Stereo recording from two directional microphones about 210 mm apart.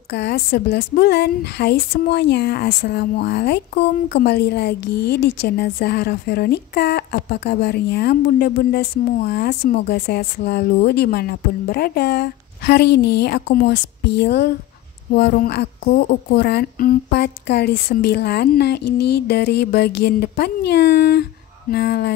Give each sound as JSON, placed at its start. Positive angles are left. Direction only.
{"t": 0.1, "sound": "a woman's voice", "side_deg": 55}